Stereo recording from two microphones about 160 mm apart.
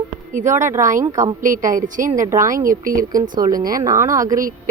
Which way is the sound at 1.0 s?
20° right (ahead or behind).